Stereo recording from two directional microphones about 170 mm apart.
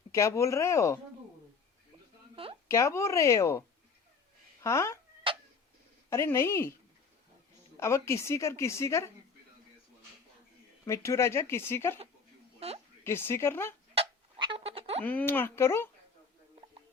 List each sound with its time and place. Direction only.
0.1 s a woman's voice: 15° left (ahead or behind)
2.3 s a sound: 35° right (ahead or behind)
2.6 s a woman's voice: 15° left (ahead or behind)
4.6 s a woman's voice: 15° left (ahead or behind)
5.2 s cat: 30° right (ahead or behind)
6.1 s a woman's voice: 15° left (ahead or behind)
7.8 s a woman's voice: 15° left (ahead or behind)
10.8 s a woman's voice: 15° left (ahead or behind)
12.5 s a sound: 35° right (ahead or behind)
13.1 s a woman's voice: 15° left (ahead or behind)
13.9 s music: 30° right (ahead or behind)
15.0 s a woman's voice: 10° left (ahead or behind)